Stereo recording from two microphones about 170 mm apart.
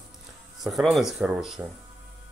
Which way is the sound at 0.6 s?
Centre (ahead or behind).